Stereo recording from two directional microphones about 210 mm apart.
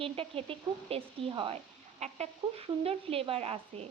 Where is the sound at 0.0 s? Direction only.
25° right (ahead or behind).